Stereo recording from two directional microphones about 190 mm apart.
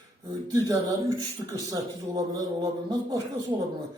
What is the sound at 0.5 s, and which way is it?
Speech, 15° right (ahead or behind).